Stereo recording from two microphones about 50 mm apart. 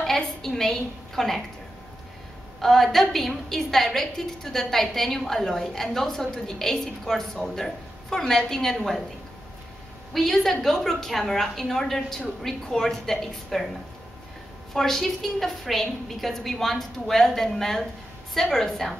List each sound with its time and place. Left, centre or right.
0.0 s a woman's voice: centre
2.6 s a woman's voice: centre
10.1 s a woman's voice: centre
14.7 s a woman's voice: centre